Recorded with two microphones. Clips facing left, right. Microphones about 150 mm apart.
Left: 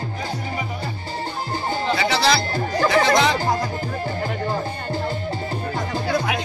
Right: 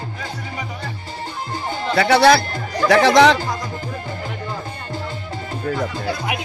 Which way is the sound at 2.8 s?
75° right (ahead or behind).